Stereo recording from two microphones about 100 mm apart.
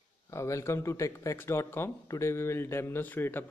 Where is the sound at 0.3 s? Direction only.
30° left (ahead or behind).